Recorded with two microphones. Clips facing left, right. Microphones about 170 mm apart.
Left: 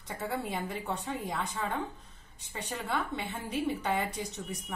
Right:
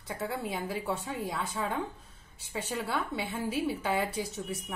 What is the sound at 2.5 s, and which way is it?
A woman's voice, 5° right (ahead or behind).